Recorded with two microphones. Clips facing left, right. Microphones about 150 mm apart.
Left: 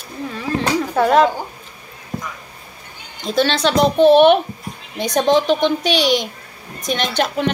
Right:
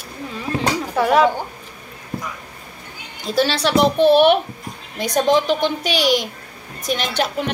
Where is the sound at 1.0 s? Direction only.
10° right (ahead or behind).